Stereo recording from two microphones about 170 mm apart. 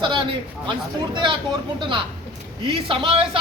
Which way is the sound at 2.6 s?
30° right (ahead or behind).